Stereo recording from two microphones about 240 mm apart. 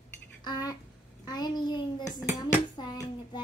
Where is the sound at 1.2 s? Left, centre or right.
Centre.